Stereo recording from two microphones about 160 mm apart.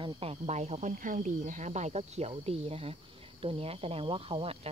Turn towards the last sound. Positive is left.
turn(degrees=-35)  # may be behind; listen again after turning